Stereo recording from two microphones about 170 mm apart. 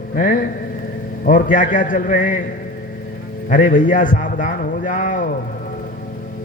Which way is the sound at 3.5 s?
50° left (ahead or behind).